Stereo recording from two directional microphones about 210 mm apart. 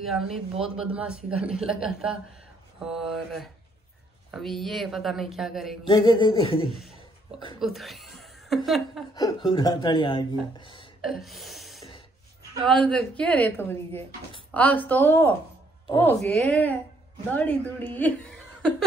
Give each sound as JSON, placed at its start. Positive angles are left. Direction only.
{"t": 0.0, "sound": "speech", "side_deg": 0}
{"t": 5.9, "sound": "speech", "side_deg": 20}
{"t": 7.6, "sound": "a woman's voice", "side_deg": 0}
{"t": 9.1, "sound": "speech", "side_deg": 20}
{"t": 11.0, "sound": "gasp", "side_deg": 0}
{"t": 12.6, "sound": "a woman's voice", "side_deg": 5}